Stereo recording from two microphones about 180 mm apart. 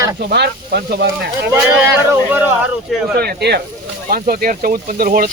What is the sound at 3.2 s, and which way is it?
Speech, 60° right (ahead or behind).